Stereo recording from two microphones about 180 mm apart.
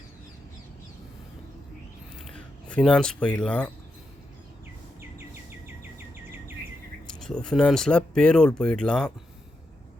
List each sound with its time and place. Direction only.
2.3 s speech: 5° left (ahead or behind)
7.1 s speech: 5° left (ahead or behind)